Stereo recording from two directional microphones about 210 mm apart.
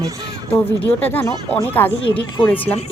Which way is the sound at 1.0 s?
10° left (ahead or behind).